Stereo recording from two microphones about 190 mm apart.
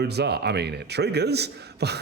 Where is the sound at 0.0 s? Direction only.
60° right (ahead or behind).